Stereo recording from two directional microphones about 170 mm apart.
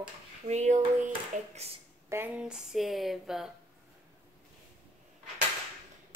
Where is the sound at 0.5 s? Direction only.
45° right (ahead or behind).